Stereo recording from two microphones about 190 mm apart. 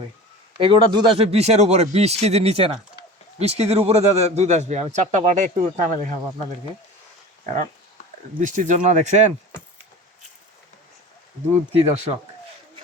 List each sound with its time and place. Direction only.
0.6 s a man's voice: 30° right (ahead or behind)
7.4 s a man's voice: 40° right (ahead or behind)
11.7 s a man's voice: 35° right (ahead or behind)